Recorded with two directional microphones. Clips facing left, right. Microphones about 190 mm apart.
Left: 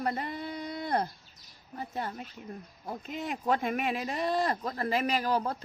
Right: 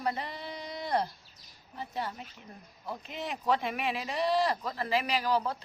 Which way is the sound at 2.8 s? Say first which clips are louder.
Left 1 dB; 45° left (ahead or behind).